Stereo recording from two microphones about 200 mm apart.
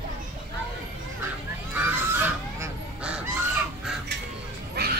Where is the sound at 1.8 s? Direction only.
10° right (ahead or behind).